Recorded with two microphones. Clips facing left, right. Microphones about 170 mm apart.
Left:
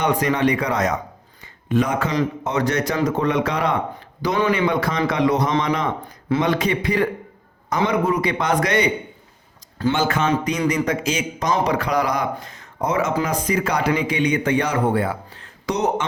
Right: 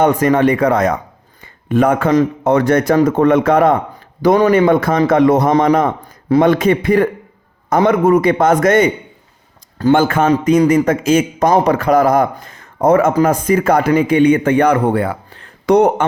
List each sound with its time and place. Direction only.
0.0 s a man's voice: 50° right (ahead or behind)